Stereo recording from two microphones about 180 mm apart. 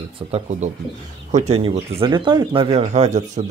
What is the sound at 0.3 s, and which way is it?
A man's voice, 40° right (ahead or behind).